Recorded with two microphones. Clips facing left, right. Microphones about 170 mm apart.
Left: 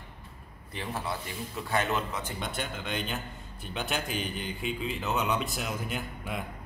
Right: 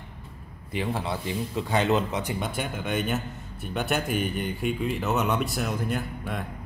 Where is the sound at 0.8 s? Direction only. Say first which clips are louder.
Right 4 dB; 25° right (ahead or behind).